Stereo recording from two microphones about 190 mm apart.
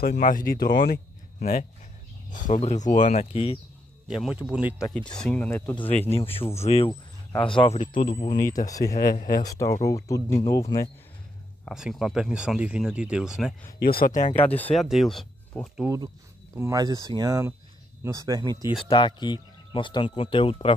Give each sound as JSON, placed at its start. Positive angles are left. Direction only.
{"t": 0.0, "sound": "speech", "side_deg": 50}
{"t": 4.1, "sound": "speech", "side_deg": -5}
{"t": 6.1, "sound": "speech", "side_deg": 30}
{"t": 7.7, "sound": "speech", "side_deg": 40}
{"t": 8.6, "sound": "speech", "side_deg": 20}
{"t": 8.9, "sound": "speech", "side_deg": 45}
{"t": 9.4, "sound": "speech", "side_deg": 15}
{"t": 11.6, "sound": "speech", "side_deg": 0}
{"t": 13.7, "sound": "speech", "side_deg": 50}
{"t": 14.8, "sound": "speech", "side_deg": 0}
{"t": 16.5, "sound": "speech", "side_deg": -15}
{"t": 18.9, "sound": "speech", "side_deg": 25}